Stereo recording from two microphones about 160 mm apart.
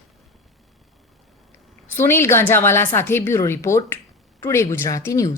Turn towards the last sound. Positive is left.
turn(degrees=20)  # may be behind; listen again after turning